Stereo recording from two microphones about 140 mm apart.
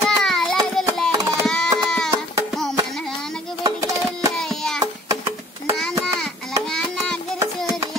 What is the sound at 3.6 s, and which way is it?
Music, 25° right (ahead or behind).